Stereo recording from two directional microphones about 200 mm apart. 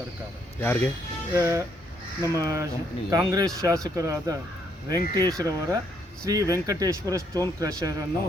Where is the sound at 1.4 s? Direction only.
15° right (ahead or behind).